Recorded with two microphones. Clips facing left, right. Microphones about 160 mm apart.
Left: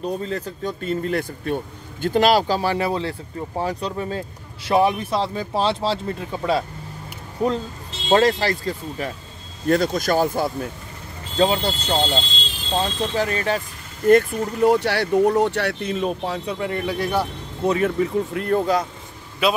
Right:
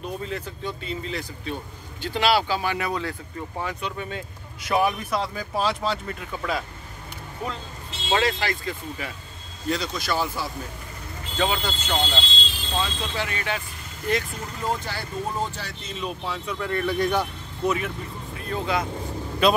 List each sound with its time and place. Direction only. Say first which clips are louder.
0.0 s speech: left 5 dB; 35° left (ahead or behind)
9.7 s speech: left 8 dB; 50° left (ahead or behind)
11.3 s speech: left 6 dB; 35° left (ahead or behind)
14.0 s speech: left 12 dB; 60° left (ahead or behind); by 16.5 s 40° left (ahead or behind)
16.5 s speech: left 2 dB; 20° left (ahead or behind)
16.8 s speech: right 1 dB; 10° left (ahead or behind)
17.6 s speech: left 6 dB; 40° left (ahead or behind)
17.9 s speech: left 14 dB; 80° left
19.4 s a man's voice: right 1 dB; 5° left (ahead or behind)